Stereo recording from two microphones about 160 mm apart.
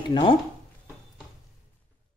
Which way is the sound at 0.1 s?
30° left (ahead or behind).